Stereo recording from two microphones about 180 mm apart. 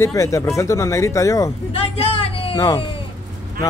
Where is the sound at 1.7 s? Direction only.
30° left (ahead or behind).